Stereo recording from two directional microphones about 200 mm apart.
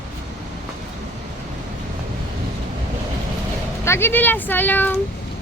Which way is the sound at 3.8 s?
10° left (ahead or behind).